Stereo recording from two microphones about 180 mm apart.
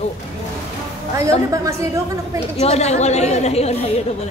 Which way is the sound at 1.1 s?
15° right (ahead or behind).